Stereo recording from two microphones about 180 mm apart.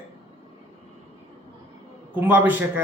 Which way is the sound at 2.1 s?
10° right (ahead or behind).